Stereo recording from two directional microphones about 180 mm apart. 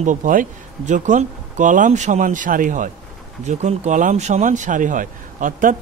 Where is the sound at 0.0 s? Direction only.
45° right (ahead or behind).